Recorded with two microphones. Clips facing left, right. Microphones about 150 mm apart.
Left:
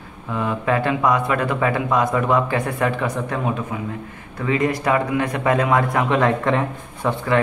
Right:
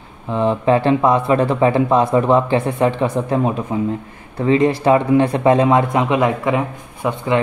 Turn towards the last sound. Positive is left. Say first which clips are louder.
# right 2 dB
turn(degrees=-15)  # may be behind; listen again after turning